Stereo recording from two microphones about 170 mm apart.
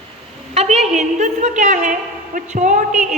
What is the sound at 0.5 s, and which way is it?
A woman's voice, 40° right (ahead or behind).